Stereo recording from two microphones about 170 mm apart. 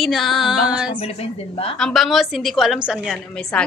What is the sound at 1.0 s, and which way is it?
Speech, 35° left (ahead or behind).